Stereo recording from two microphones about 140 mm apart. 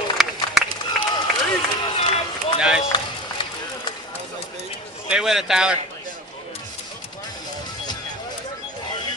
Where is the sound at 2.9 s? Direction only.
35° left (ahead or behind).